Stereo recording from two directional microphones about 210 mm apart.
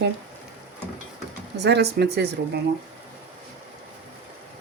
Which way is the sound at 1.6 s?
55° right (ahead or behind).